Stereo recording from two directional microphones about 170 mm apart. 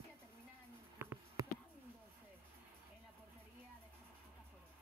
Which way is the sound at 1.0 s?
15° right (ahead or behind).